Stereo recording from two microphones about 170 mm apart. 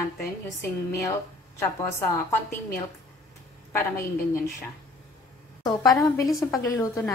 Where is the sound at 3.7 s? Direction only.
15° left (ahead or behind).